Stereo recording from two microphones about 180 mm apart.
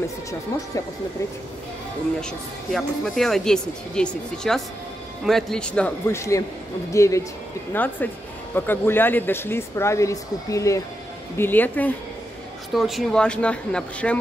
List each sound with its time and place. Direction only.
2.1 s speech: centre (ahead or behind)